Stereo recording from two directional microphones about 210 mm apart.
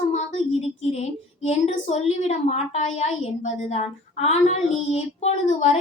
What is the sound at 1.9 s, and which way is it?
A woman's voice, 30° left (ahead or behind).